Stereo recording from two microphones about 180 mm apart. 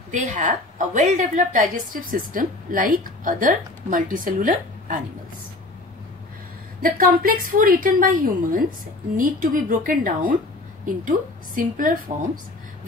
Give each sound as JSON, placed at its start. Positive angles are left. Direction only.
{"t": 0.1, "sound": "a woman's voice", "side_deg": -40}
{"t": 6.8, "sound": "a woman's voice", "side_deg": -55}